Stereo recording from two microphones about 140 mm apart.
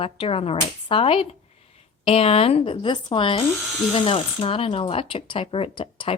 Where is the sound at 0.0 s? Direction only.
40° left (ahead or behind).